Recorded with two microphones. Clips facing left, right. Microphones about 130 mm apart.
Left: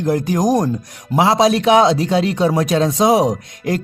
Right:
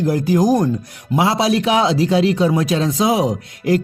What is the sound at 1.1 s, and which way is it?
Speech, 40° left (ahead or behind).